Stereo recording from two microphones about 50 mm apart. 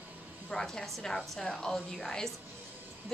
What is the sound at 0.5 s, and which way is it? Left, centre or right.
Speech, centre.